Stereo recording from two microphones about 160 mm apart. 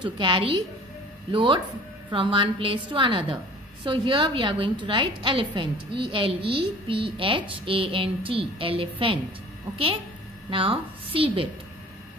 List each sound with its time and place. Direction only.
0.0 s a woman's voice: 30° right (ahead or behind)
10.5 s a woman's voice: 35° right (ahead or behind)